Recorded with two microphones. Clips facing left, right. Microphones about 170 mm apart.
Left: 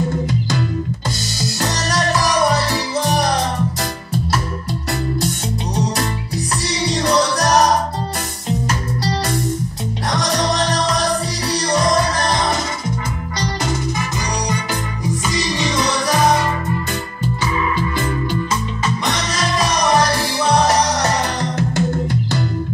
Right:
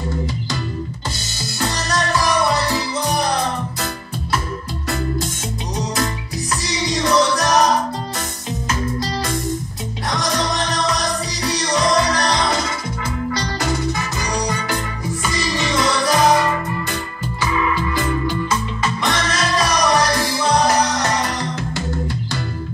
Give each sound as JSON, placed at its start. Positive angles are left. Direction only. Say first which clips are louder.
{"t": 2.0, "sound": "music", "louder": "left 1 dB", "side_deg": 40}
{"t": 6.9, "sound": "music", "louder": "right 1 dB", "side_deg": 35}
{"t": 10.1, "sound": "music", "louder": "left 2 dB", "side_deg": 35}
{"t": 15.5, "sound": "music", "louder": "right 2 dB", "side_deg": 20}
{"t": 19.6, "sound": "music", "louder": "left 2 dB", "side_deg": 25}